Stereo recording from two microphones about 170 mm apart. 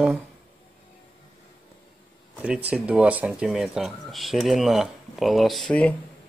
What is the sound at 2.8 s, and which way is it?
Speech, 10° right (ahead or behind).